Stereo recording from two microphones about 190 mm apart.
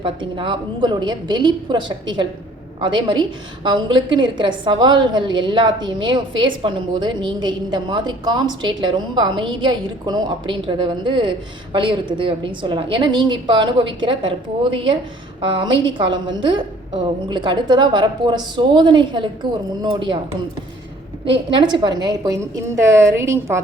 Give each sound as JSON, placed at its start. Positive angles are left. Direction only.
{"t": 0.0, "sound": "a woman's voice", "side_deg": -25}
{"t": 21.2, "sound": "a woman's voice", "side_deg": -25}